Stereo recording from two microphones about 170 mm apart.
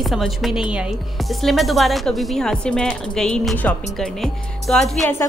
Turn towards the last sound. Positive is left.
turn(degrees=0)  # may be behind; listen again after turning